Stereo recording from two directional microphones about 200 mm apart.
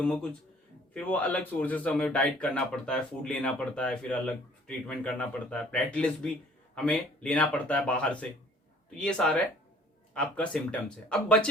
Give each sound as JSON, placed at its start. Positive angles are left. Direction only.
{"t": 0.0, "sound": "speech", "side_deg": 5}